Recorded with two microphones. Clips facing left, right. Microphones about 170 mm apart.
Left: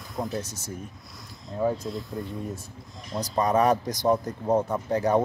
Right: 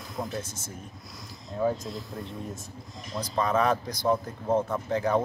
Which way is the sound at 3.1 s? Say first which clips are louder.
Left 3 dB; 30° left (ahead or behind).